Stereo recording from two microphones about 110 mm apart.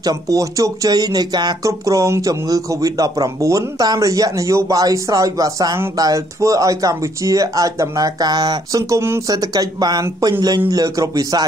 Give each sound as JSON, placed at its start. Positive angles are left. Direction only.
{"t": 0.0, "sound": "speech", "side_deg": -30}